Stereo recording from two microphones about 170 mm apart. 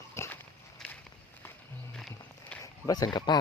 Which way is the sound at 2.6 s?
20° left (ahead or behind).